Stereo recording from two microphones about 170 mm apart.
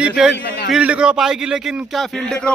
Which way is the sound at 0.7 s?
5° right (ahead or behind).